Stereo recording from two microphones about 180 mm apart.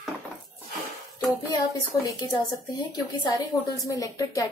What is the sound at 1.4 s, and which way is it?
Speech, 20° left (ahead or behind).